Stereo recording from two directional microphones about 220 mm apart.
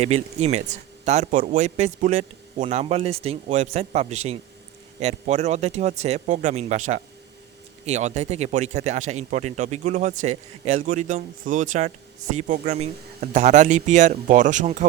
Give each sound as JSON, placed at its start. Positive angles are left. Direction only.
{"t": 0.0, "sound": "speech", "side_deg": -30}